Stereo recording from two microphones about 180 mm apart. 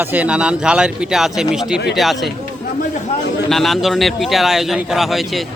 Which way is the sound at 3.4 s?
Centre (ahead or behind).